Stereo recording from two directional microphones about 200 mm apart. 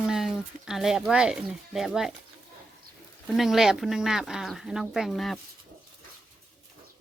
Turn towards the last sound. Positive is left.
turn(degrees=0)  # may be behind; listen again after turning